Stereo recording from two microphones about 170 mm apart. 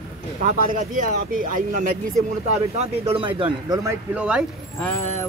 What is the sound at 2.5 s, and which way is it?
Speech, 40° right (ahead or behind).